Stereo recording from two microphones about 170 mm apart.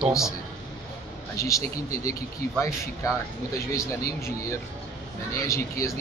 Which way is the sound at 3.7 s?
20° left (ahead or behind).